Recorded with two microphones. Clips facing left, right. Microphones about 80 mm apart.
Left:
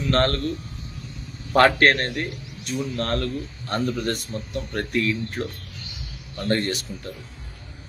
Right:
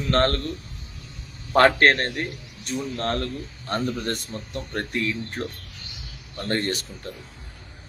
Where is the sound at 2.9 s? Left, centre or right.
Right.